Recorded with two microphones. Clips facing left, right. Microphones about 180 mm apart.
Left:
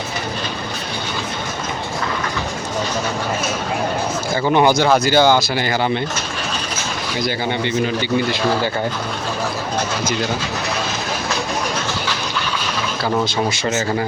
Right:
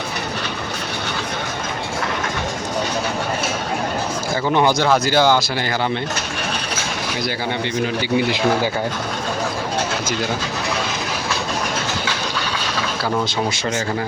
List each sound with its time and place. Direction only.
4.5 s speech: 10° left (ahead or behind)
7.6 s a man's voice: 5° right (ahead or behind)